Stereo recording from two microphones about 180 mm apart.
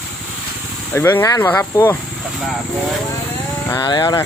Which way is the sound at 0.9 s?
15° left (ahead or behind).